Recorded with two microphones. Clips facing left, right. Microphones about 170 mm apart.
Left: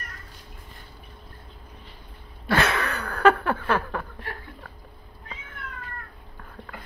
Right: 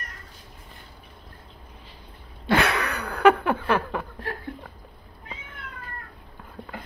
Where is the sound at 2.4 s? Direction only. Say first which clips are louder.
Right 1 dB; 15° right (ahead or behind).